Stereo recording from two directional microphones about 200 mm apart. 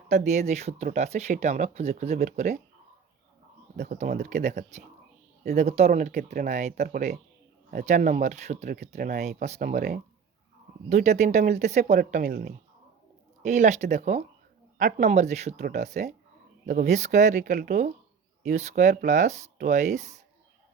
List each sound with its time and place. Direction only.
0.1 s speech: 35° right (ahead or behind)
3.8 s speech: 40° right (ahead or behind)